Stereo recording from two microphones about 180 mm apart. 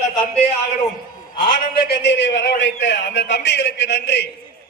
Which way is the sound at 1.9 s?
70° left (ahead or behind).